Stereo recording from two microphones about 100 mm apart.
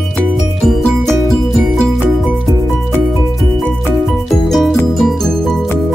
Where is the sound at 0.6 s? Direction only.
5° left (ahead or behind).